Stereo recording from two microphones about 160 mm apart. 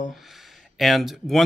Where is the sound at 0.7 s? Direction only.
Centre (ahead or behind).